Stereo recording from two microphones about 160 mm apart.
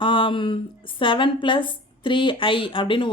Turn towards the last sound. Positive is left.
turn(degrees=30)  # may be behind; listen again after turning